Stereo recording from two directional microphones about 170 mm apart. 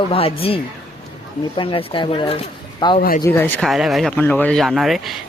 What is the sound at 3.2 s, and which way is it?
Speech, 15° left (ahead or behind).